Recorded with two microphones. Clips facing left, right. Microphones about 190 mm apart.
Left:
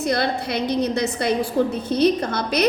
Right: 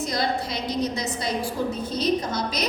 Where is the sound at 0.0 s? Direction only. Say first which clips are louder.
Left 4 dB; 60° left (ahead or behind).